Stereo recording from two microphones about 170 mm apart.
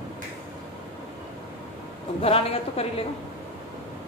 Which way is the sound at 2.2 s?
35° left (ahead or behind).